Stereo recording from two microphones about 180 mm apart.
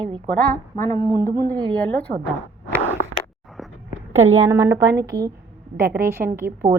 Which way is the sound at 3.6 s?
Centre (ahead or behind).